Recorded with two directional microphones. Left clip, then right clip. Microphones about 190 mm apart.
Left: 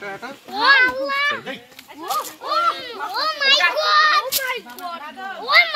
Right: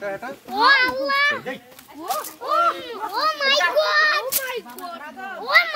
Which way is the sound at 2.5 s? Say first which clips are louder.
Right 1 dB; 40° right (ahead or behind).